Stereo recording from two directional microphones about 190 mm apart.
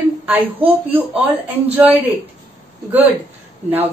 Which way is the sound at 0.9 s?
10° right (ahead or behind).